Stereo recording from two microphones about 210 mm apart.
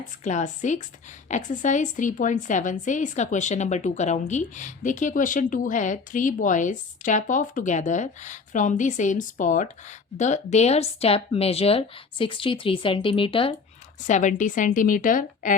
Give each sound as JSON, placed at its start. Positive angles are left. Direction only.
{"t": 0.3, "sound": "a woman's voice", "side_deg": 35}
{"t": 14.1, "sound": "a woman's voice", "side_deg": 35}